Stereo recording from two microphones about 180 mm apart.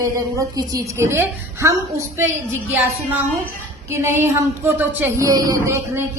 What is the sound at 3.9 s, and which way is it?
A woman's voice, 15° right (ahead or behind).